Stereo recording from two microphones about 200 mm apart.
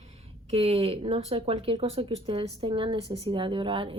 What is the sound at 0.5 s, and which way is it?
A woman's voice, 30° right (ahead or behind).